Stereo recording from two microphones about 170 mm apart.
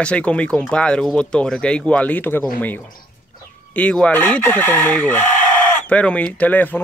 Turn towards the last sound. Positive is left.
turn(degrees=10)  # may be behind; listen again after turning